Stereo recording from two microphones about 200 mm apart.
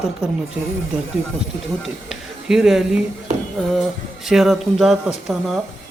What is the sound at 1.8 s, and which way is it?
Speech, centre (ahead or behind).